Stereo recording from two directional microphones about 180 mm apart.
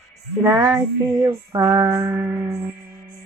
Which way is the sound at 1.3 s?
20° right (ahead or behind).